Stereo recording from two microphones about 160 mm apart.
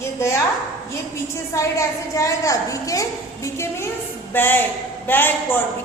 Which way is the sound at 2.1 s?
20° left (ahead or behind).